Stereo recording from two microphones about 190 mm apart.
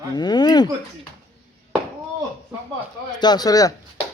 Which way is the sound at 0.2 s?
20° left (ahead or behind).